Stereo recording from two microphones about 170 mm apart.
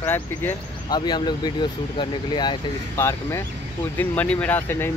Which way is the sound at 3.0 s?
15° left (ahead or behind).